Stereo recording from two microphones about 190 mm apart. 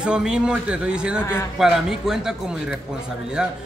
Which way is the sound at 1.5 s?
Centre (ahead or behind).